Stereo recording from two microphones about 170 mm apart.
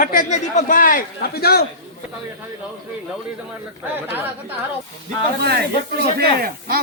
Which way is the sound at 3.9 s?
10° right (ahead or behind).